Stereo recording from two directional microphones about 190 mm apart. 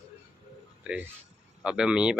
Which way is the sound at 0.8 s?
5° right (ahead or behind).